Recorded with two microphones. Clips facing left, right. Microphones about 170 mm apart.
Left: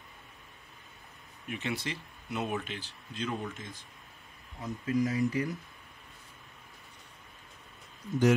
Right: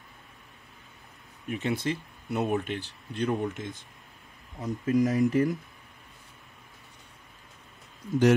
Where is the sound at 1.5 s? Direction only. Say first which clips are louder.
Right 6 dB; 50° right (ahead or behind).